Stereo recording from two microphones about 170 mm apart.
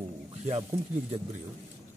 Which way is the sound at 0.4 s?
40° right (ahead or behind).